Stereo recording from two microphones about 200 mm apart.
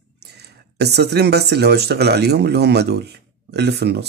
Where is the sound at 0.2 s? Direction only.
55° right (ahead or behind).